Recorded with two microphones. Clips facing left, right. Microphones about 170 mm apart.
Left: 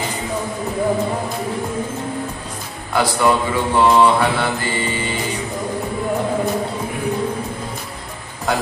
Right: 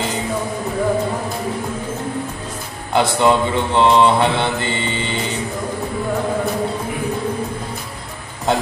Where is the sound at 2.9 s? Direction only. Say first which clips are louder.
Right 2 dB; 25° right (ahead or behind).